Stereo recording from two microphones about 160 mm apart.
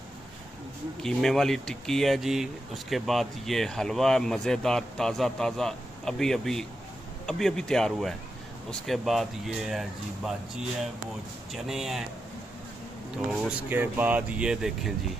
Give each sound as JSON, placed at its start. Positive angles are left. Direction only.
{"t": 1.0, "sound": "speech", "side_deg": 0}
{"t": 13.3, "sound": "speech", "side_deg": -10}